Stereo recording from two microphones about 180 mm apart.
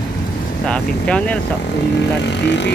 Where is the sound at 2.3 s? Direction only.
75° left (ahead or behind).